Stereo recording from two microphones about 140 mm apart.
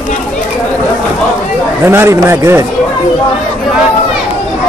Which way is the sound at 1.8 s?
15° right (ahead or behind).